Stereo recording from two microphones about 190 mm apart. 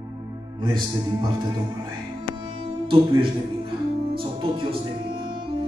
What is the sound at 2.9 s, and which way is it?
Music, 30° right (ahead or behind).